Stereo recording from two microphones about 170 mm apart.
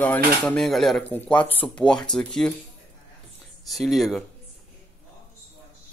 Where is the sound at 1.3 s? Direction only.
35° left (ahead or behind).